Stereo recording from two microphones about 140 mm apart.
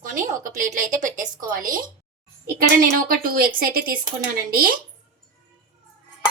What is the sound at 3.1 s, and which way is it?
Speech, 90° right.